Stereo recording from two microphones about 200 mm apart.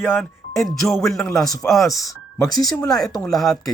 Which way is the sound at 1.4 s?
20° left (ahead or behind).